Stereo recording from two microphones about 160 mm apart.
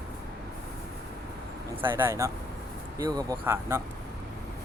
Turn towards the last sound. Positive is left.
turn(degrees=-15)  # may be behind; listen again after turning